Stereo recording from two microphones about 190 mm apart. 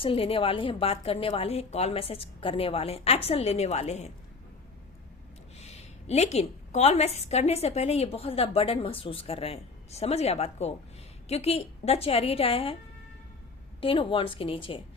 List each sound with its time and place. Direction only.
0.0 s a woman's voice: 30° left (ahead or behind)
5.5 s a woman's voice: 35° left (ahead or behind)
13.8 s a woman's voice: 30° left (ahead or behind)